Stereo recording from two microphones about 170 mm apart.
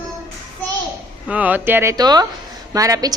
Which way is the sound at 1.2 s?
10° right (ahead or behind).